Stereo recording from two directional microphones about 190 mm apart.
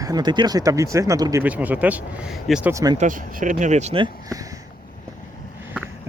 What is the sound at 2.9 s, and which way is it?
Speech, 45° right (ahead or behind).